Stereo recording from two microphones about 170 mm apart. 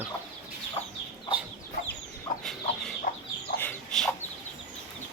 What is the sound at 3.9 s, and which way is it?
Chicken, centre (ahead or behind).